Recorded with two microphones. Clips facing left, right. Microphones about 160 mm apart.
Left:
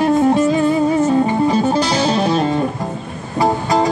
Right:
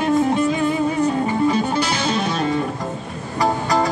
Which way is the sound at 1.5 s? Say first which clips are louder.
Left 4 dB; 35° left (ahead or behind).